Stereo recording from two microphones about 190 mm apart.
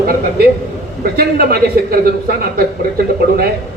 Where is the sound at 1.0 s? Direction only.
50° right (ahead or behind).